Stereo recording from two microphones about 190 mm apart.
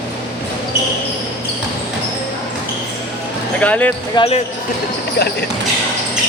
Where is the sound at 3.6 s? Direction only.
5° left (ahead or behind).